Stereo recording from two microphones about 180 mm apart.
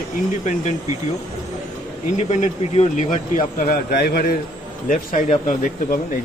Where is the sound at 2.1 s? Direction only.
40° left (ahead or behind); by 4.4 s 60° left (ahead or behind).